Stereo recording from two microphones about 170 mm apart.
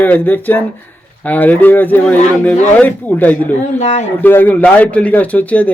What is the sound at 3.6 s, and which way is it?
Speech, 40° left (ahead or behind).